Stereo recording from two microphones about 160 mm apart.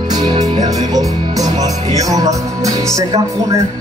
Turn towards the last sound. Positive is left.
turn(degrees=-20)  # may be behind; listen again after turning